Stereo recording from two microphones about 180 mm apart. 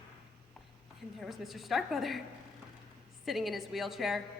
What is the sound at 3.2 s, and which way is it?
A woman's voice, centre (ahead or behind).